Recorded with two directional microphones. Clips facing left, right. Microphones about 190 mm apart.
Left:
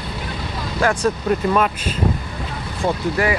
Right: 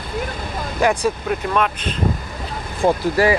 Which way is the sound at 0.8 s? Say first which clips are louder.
Right 1 dB; 15° right (ahead or behind).